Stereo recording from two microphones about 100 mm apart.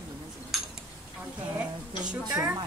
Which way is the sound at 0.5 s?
Centre (ahead or behind).